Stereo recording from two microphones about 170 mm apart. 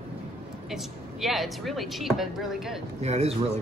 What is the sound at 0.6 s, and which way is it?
A man's voice, centre (ahead or behind).